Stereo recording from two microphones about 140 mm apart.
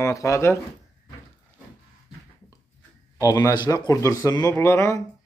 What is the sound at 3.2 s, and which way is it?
Speech, 20° left (ahead or behind).